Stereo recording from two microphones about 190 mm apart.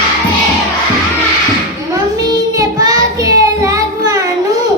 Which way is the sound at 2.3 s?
20° right (ahead or behind).